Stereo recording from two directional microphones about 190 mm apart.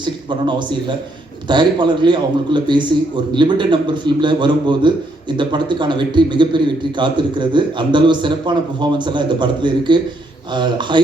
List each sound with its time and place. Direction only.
0.0 s a man's voice: 25° right (ahead or behind)